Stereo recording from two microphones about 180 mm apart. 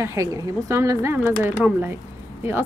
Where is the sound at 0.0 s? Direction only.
15° right (ahead or behind).